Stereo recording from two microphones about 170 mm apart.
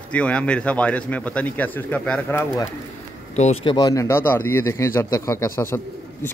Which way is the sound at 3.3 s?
40° left (ahead or behind).